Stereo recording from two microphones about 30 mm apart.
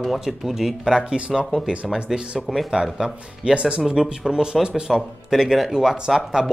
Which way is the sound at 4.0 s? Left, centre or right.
Centre.